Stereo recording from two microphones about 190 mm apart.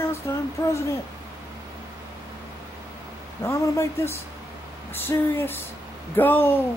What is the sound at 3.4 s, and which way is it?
Speech, 15° left (ahead or behind).